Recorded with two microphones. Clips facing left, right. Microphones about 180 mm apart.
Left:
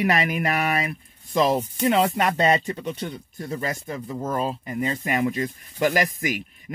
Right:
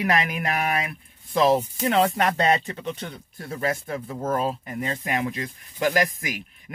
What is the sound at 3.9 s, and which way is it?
Speech, 45° right (ahead or behind).